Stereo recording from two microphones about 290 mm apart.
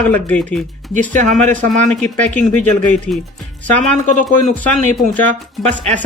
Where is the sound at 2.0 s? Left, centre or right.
Centre.